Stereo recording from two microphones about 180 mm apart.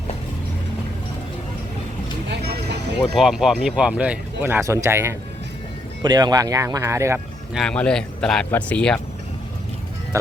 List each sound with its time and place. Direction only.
3.2 s speech: centre (ahead or behind)
7.5 s speech: 5° left (ahead or behind)